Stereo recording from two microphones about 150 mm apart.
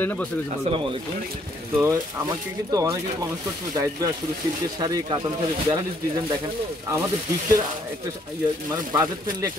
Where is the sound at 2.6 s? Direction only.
25° right (ahead or behind).